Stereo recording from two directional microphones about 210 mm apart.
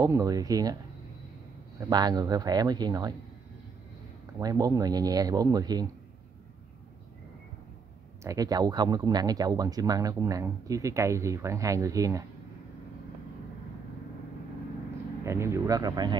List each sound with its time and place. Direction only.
0.0 s speech: 15° right (ahead or behind)
1.8 s speech: 20° right (ahead or behind)
4.4 s speech: 15° right (ahead or behind)
8.2 s speech: 15° right (ahead or behind)
15.2 s speech: 15° right (ahead or behind)